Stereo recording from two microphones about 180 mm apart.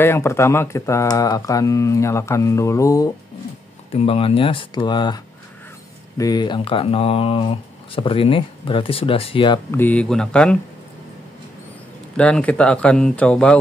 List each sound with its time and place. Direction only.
0.0 s speech: 15° left (ahead or behind)
3.9 s speech: 30° left (ahead or behind)
9.7 s speech: 10° left (ahead or behind)
12.2 s speech: 5° left (ahead or behind)